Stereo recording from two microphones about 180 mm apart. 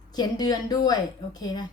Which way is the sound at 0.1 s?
20° left (ahead or behind).